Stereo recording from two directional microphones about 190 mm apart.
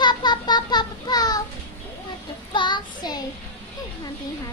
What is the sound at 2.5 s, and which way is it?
Child singing, 25° left (ahead or behind).